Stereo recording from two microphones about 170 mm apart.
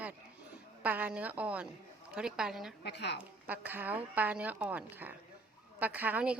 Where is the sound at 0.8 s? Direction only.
10° right (ahead or behind).